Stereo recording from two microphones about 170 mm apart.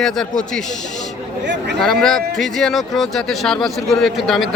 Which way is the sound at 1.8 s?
5° left (ahead or behind).